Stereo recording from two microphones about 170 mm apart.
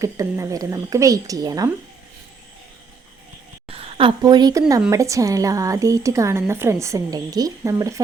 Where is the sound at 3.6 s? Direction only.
35° right (ahead or behind); by 8.0 s 20° right (ahead or behind).